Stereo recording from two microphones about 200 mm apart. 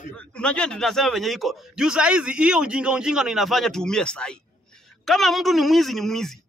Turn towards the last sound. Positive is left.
turn(degrees=0)  # may be behind; listen again after turning